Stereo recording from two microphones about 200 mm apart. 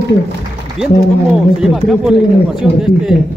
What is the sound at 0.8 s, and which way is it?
Speech, 5° right (ahead or behind).